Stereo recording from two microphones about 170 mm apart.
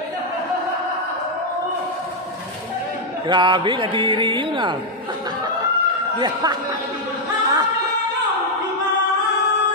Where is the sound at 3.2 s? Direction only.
25° right (ahead or behind).